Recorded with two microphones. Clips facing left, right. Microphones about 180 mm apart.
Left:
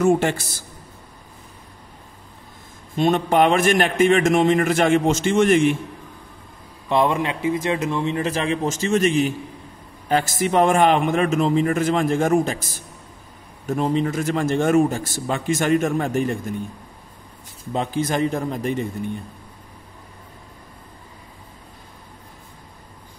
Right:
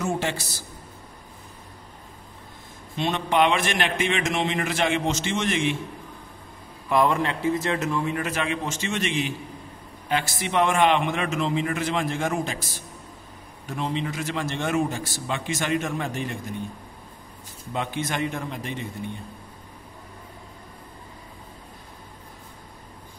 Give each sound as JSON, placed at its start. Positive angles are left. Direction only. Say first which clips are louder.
{"t": 0.0, "sound": "a man's voice", "louder": "left 9 dB", "side_deg": 55}
{"t": 3.0, "sound": "a man's voice", "louder": "left 5 dB", "side_deg": 45}
{"t": 6.9, "sound": "a man's voice", "louder": "left 2 dB", "side_deg": 20}
{"t": 17.7, "sound": "a man's voice", "louder": "left 6 dB", "side_deg": 35}